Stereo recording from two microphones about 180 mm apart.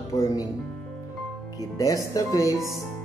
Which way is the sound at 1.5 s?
20° left (ahead or behind).